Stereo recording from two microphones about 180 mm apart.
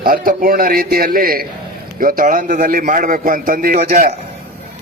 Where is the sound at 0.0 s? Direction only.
55° right (ahead or behind).